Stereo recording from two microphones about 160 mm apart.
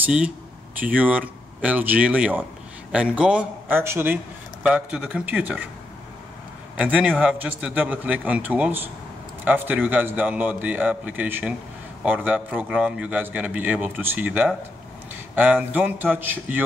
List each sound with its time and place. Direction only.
0.0 s a man's voice: 5° right (ahead or behind)
6.8 s a man's voice: 10° right (ahead or behind)